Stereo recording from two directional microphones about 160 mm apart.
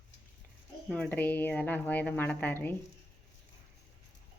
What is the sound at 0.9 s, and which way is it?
A woman's voice, centre (ahead or behind).